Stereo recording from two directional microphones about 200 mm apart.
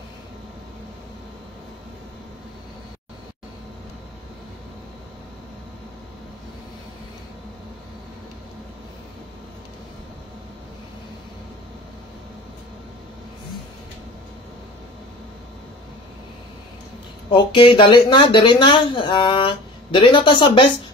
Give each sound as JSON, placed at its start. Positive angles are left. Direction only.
{"t": 17.3, "sound": "speech", "side_deg": 25}